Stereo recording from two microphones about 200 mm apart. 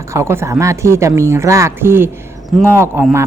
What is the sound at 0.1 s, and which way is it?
Speech, 15° right (ahead or behind).